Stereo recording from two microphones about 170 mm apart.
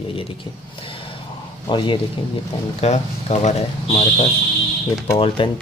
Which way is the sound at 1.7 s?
30° left (ahead or behind).